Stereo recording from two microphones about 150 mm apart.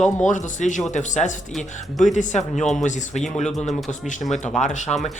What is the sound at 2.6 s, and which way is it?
Speech, centre (ahead or behind).